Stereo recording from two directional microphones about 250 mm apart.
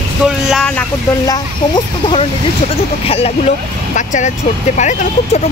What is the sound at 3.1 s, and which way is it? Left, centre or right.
Speech, left.